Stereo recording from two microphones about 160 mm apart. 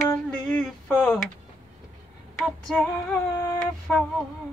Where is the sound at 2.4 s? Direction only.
Centre (ahead or behind).